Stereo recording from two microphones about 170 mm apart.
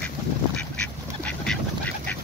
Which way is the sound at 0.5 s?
5° left (ahead or behind).